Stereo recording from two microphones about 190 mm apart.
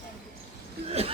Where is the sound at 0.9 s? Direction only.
30° right (ahead or behind).